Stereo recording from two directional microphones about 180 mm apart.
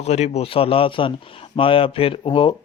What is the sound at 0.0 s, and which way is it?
A man's voice, 35° left (ahead or behind).